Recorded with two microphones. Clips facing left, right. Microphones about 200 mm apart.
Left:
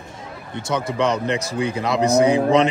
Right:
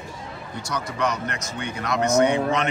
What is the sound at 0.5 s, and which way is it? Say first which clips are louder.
Speech: left 6 dB; 25° left (ahead or behind).